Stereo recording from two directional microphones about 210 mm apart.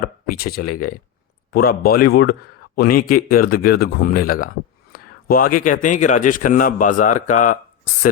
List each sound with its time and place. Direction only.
0.3 s a man's voice: 45° left (ahead or behind)